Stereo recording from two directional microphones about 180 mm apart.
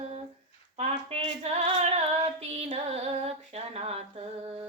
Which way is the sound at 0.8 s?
35° right (ahead or behind).